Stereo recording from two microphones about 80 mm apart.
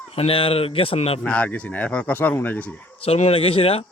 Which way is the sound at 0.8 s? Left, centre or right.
Left.